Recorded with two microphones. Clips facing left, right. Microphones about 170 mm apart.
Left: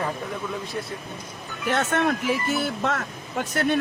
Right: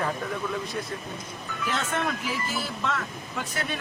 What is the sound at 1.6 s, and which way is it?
Speech, 65° left (ahead or behind).